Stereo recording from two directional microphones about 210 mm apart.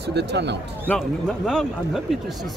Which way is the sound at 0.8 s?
5° left (ahead or behind).